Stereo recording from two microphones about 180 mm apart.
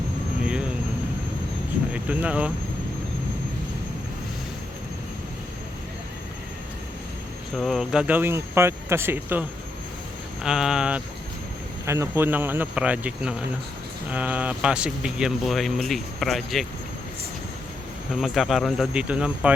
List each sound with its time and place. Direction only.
0.4 s vehicle: 5° right (ahead or behind)
1.9 s speech: 5° right (ahead or behind)
7.5 s speech: centre (ahead or behind)
18.2 s speech: centre (ahead or behind)